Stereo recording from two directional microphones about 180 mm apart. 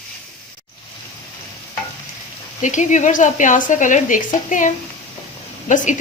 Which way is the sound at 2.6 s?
45° left (ahead or behind).